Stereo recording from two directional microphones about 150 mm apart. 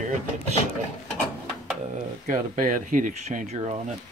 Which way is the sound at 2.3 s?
65° right (ahead or behind).